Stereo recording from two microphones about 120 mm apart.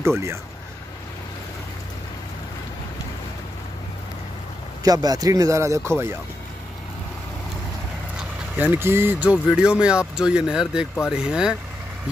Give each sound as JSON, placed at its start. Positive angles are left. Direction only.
{"t": 4.8, "sound": "speech", "side_deg": -30}
{"t": 8.5, "sound": "speech", "side_deg": -15}